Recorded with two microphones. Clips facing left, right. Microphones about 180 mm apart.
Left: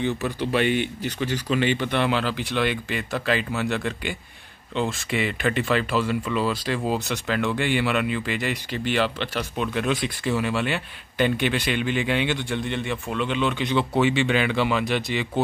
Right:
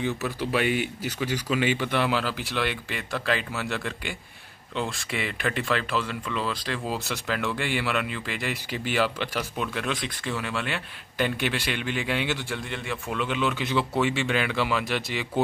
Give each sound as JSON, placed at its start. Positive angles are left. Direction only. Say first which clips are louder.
{"t": 0.0, "sound": "speech", "louder": "left 3 dB", "side_deg": -5}